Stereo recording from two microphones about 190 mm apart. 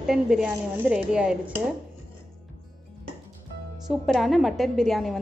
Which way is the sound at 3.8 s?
Centre (ahead or behind).